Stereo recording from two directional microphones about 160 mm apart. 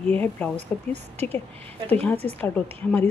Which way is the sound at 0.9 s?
40° right (ahead or behind).